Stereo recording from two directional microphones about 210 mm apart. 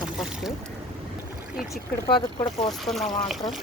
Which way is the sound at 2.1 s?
20° left (ahead or behind).